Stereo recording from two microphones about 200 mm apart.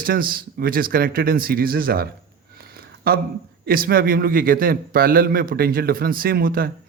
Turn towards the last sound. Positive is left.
turn(degrees=-45)  # may be behind; listen again after turning